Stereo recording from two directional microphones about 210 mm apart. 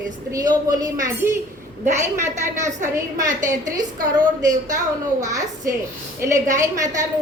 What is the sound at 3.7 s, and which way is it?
A woman's voice, 15° right (ahead or behind).